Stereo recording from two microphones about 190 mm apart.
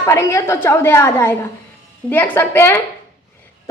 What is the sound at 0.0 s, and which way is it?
A woman's voice, 15° left (ahead or behind).